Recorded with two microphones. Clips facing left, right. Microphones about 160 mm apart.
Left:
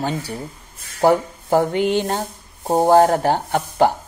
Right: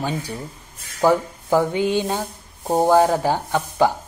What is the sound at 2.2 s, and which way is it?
Speech, 15° left (ahead or behind).